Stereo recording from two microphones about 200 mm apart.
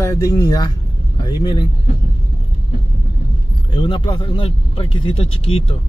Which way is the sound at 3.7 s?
25° left (ahead or behind).